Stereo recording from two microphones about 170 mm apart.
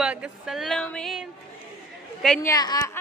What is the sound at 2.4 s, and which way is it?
Speech, 25° left (ahead or behind).